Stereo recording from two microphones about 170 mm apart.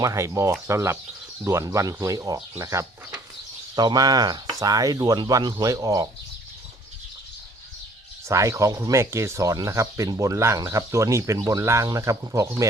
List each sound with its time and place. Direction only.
0.0 s speech: 20° right (ahead or behind)
8.3 s speech: 20° right (ahead or behind)